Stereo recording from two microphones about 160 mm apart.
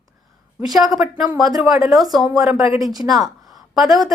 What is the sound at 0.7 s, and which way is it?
A woman's voice, centre (ahead or behind).